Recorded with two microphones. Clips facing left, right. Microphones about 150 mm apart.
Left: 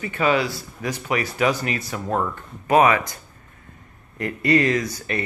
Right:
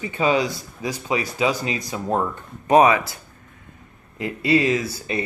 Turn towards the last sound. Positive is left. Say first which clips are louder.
# even
turn(degrees=-10)  # may be behind; listen again after turning